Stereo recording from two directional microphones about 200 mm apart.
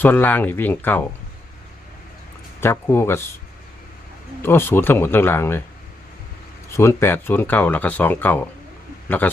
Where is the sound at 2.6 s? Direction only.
15° left (ahead or behind).